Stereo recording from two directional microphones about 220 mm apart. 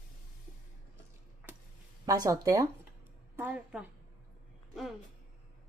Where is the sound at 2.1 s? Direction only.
15° right (ahead or behind).